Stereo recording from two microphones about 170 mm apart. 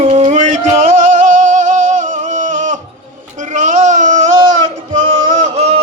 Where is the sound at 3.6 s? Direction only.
45° right (ahead or behind).